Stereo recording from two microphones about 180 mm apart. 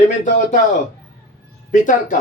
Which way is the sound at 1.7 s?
45° left (ahead or behind).